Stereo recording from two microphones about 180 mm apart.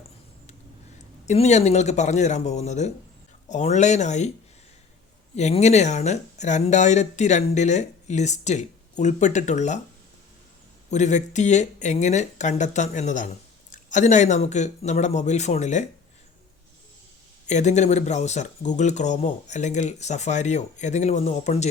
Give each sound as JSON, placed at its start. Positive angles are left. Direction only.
{"t": 1.3, "sound": "speech", "side_deg": 40}
{"t": 5.4, "sound": "speech", "side_deg": 40}
{"t": 10.9, "sound": "speech", "side_deg": 40}
{"t": 17.4, "sound": "speech", "side_deg": 40}